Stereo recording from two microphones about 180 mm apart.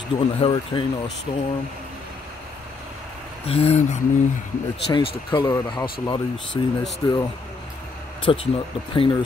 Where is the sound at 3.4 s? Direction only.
35° left (ahead or behind).